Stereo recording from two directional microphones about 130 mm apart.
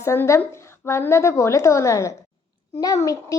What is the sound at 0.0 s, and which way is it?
A woman's voice, 20° left (ahead or behind).